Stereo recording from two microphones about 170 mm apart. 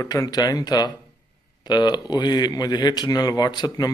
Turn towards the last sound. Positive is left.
turn(degrees=25)  # may be behind; listen again after turning